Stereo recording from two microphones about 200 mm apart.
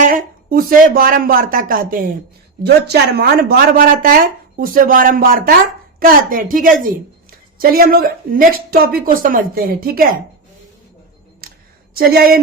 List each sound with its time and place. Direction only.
0.0 s a woman's voice: 45° right (ahead or behind)
11.4 s a sound: 50° right (ahead or behind)
11.9 s a woman's voice: 50° right (ahead or behind)